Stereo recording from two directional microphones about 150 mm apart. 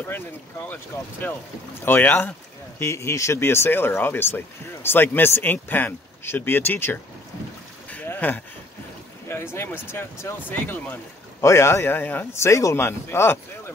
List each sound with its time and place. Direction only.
0.1 s speech: 15° left (ahead or behind)
7.9 s a sound: 10° left (ahead or behind)
9.3 s speech: 15° left (ahead or behind)